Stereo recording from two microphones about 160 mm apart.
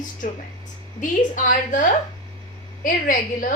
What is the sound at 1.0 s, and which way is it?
A woman's voice, 55° left (ahead or behind).